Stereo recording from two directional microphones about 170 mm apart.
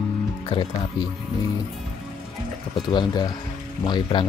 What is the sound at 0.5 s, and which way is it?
Speech, 30° left (ahead or behind).